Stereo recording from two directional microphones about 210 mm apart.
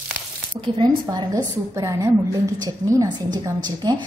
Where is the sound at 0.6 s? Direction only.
20° right (ahead or behind).